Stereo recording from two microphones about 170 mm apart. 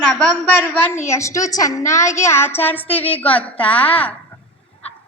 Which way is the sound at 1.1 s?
20° left (ahead or behind).